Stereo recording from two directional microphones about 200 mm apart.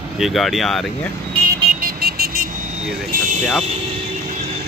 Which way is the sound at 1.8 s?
45° right (ahead or behind).